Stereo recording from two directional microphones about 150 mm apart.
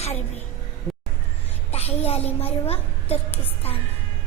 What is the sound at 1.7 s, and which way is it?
A woman's voice, 45° left (ahead or behind).